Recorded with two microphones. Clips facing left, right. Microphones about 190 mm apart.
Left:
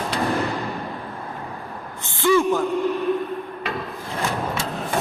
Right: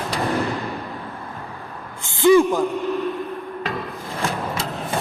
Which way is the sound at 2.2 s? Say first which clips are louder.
Right 4 dB; 15° right (ahead or behind).